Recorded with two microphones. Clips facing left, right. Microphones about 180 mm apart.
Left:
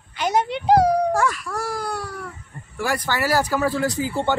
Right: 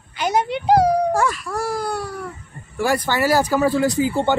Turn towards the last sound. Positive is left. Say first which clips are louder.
# right 4 dB
turn(degrees=-20)  # may be behind; listen again after turning